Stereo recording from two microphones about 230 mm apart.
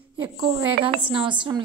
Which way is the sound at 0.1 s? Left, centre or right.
Centre.